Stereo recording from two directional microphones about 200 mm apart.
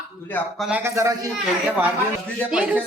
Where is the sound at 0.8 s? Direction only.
15° right (ahead or behind).